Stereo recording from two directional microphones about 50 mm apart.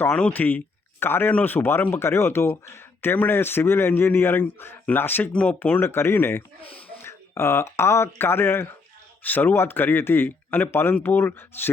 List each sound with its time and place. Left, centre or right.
0.1 s speech: left
0.3 s speech: left
3.1 s a man's voice: left
5.3 s speech: left
5.5 s speech: left
5.8 s speech: left
7.0 s speech: left
9.2 s a man's voice: left